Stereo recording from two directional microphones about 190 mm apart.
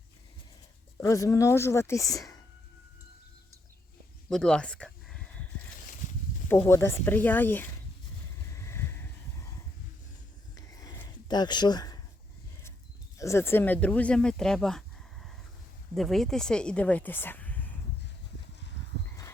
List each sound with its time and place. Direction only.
0.9 s a woman's voice: 15° left (ahead or behind)
4.3 s a sound: 5° left (ahead or behind)
6.5 s a woman's voice: 15° left (ahead or behind)
8.5 s boat: 15° left (ahead or behind)
10.5 s a sound: 20° left (ahead or behind)
13.1 s a woman's voice: 15° left (ahead or behind)